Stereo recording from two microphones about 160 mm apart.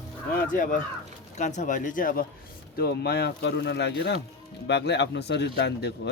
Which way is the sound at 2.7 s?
90° left.